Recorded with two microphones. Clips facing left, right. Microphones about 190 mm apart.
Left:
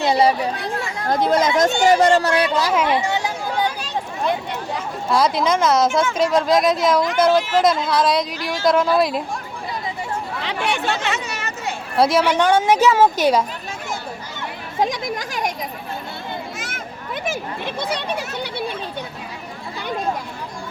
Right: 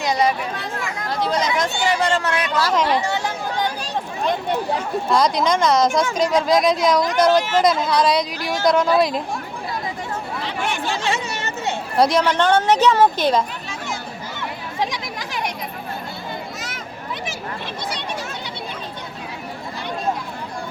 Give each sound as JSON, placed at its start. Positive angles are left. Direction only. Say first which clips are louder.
{"t": 0.0, "sound": "speech", "louder": "left 3 dB", "side_deg": 30}
{"t": 2.6, "sound": "a woman's voice", "louder": "even", "side_deg": 10}
{"t": 5.0, "sound": "speech", "louder": "left 1 dB", "side_deg": 5}
{"t": 10.4, "sound": "chatter", "louder": "left 3 dB", "side_deg": 70}
{"t": 11.0, "sound": "a sound", "louder": "right 1 dB", "side_deg": -30}
{"t": 11.9, "sound": "a woman's voice", "louder": "left 1 dB", "side_deg": 5}
{"t": 14.8, "sound": "speech", "louder": "left 5 dB", "side_deg": 45}
{"t": 16.6, "sound": "a sound", "louder": "even", "side_deg": 50}
{"t": 17.7, "sound": "speech", "louder": "left 8 dB", "side_deg": 55}